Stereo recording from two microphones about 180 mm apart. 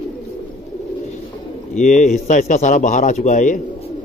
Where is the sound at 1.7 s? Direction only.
45° left (ahead or behind).